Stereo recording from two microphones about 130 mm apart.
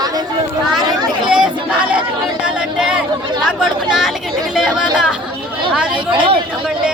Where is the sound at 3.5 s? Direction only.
Centre (ahead or behind).